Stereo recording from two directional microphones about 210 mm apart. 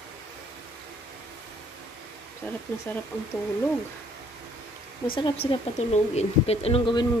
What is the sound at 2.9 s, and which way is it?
Speech, 10° left (ahead or behind).